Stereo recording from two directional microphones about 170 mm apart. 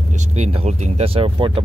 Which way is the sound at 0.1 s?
40° right (ahead or behind).